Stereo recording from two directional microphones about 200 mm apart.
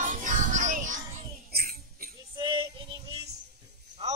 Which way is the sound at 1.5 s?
50° right (ahead or behind).